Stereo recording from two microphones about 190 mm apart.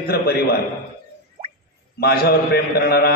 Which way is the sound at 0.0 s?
55° left (ahead or behind).